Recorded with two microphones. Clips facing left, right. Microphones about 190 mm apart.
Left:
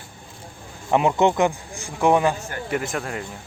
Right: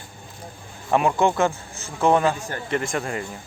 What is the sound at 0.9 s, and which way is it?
Speech, 20° left (ahead or behind).